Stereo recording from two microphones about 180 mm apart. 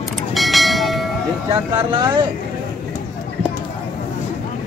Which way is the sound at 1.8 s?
25° right (ahead or behind).